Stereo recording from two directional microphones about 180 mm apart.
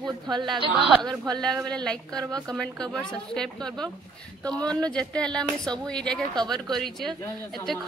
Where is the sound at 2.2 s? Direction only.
20° right (ahead or behind).